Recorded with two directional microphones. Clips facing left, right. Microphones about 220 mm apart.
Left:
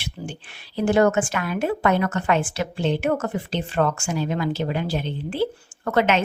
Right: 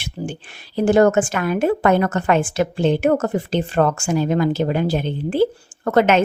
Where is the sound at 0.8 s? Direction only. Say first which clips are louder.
Right 4 dB; 45° right (ahead or behind).